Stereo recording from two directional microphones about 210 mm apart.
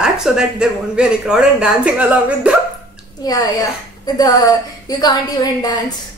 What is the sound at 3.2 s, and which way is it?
A woman's voice, 15° left (ahead or behind).